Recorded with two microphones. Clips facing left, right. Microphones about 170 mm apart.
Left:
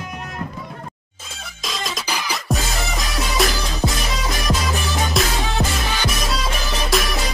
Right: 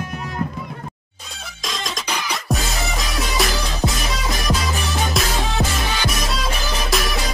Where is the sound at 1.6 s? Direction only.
5° left (ahead or behind).